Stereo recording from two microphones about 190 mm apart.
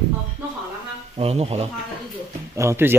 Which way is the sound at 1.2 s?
30° right (ahead or behind).